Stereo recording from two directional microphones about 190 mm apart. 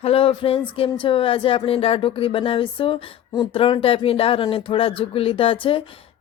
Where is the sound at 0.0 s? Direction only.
30° left (ahead or behind).